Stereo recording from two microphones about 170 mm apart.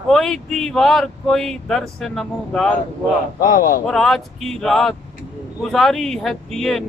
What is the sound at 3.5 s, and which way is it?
Speech, 55° left (ahead or behind).